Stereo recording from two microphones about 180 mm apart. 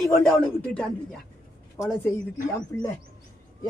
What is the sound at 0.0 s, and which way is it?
Speech, 5° left (ahead or behind).